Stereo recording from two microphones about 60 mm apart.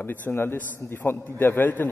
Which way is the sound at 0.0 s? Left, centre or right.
Left.